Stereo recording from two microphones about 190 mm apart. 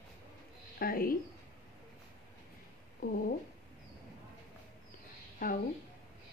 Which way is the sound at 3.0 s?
50° left (ahead or behind).